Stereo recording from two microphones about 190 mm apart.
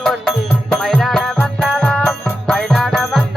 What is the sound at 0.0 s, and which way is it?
Music, centre (ahead or behind).